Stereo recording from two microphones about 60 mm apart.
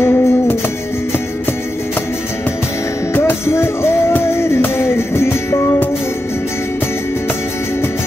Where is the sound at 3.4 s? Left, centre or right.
Left.